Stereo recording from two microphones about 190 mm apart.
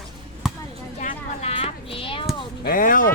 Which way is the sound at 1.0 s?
40° left (ahead or behind).